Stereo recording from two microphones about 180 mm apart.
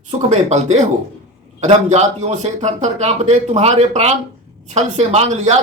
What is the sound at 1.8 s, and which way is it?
Speech, 40° right (ahead or behind).